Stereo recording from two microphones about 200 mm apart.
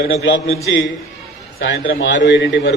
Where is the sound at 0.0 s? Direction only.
60° left (ahead or behind).